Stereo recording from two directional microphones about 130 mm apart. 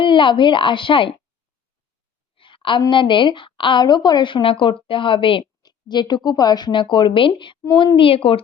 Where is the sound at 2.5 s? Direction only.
40° left (ahead or behind).